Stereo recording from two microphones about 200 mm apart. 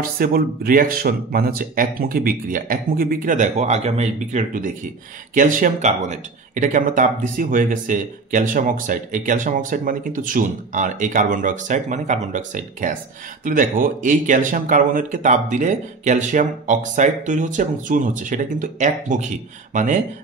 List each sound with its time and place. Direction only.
0.0 s speech: 45° right (ahead or behind)